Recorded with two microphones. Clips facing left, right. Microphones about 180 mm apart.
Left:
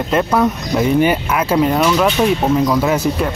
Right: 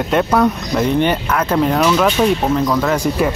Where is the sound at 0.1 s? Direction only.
Centre (ahead or behind).